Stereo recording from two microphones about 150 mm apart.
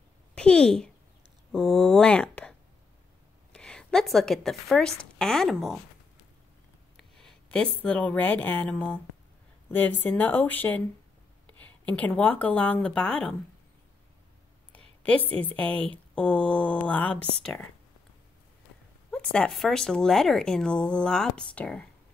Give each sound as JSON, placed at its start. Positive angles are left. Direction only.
{"t": 0.3, "sound": "a sound", "side_deg": 5}
{"t": 1.5, "sound": "speech", "side_deg": 5}
{"t": 3.5, "sound": "a woman's voice", "side_deg": 5}
{"t": 7.0, "sound": "a sound", "side_deg": 5}
{"t": 7.8, "sound": "speech", "side_deg": 10}
{"t": 15.5, "sound": "speech", "side_deg": 10}
{"t": 19.0, "sound": "speech", "side_deg": 5}